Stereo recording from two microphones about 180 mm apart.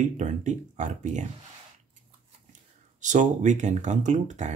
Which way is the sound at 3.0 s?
40° right (ahead or behind).